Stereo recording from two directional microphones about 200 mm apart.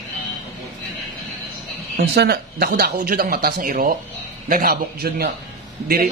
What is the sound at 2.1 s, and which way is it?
Speech, 55° right (ahead or behind).